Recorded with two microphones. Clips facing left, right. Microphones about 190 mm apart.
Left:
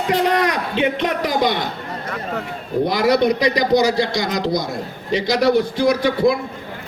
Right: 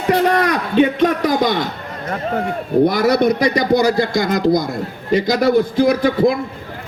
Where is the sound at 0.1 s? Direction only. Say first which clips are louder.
Right 3 dB; 55° right (ahead or behind).